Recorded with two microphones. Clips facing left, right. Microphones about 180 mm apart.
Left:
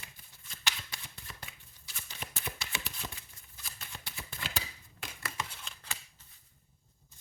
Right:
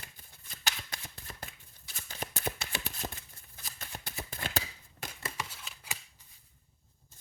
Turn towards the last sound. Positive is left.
turn(degrees=-10)  # may be behind; listen again after turning